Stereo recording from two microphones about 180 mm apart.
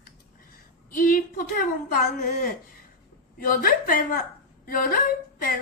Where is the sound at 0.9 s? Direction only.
50° left (ahead or behind).